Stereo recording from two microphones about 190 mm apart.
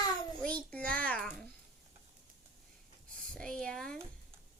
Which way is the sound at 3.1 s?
5° left (ahead or behind).